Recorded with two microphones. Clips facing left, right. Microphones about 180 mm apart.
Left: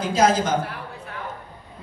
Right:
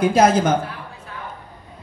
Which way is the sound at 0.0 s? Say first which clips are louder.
Right 4 dB; 60° right (ahead or behind).